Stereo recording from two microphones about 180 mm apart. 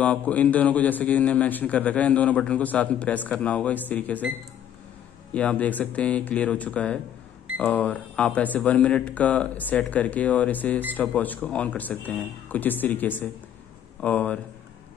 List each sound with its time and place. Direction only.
0.0 s a man's voice: 10° left (ahead or behind)
5.3 s a man's voice: 5° left (ahead or behind)